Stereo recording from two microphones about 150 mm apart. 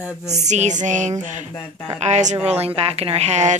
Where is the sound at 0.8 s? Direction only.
55° right (ahead or behind).